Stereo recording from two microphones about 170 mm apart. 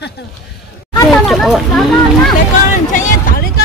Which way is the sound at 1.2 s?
Centre (ahead or behind).